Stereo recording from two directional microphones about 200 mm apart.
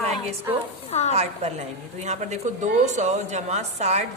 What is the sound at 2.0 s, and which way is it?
A woman's voice, 35° right (ahead or behind).